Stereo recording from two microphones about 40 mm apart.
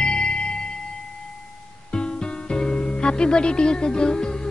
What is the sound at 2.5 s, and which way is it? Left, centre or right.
Music, centre.